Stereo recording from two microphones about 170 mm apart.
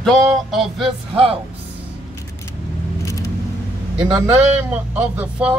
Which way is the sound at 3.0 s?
20° left (ahead or behind).